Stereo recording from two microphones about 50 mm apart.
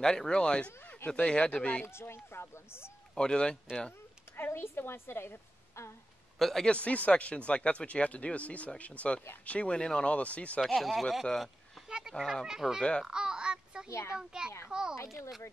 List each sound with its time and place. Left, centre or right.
0.0 s speech: centre
1.9 s a woman's voice: left
3.2 s speech: centre
4.4 s a woman's voice: left
6.3 s a man's voice: centre
6.6 s speech: left
10.6 s speech: centre
11.3 s a sound: centre
12.1 s a child's voice: centre
13.8 s a child's voice: left
14.1 s a child's voice: centre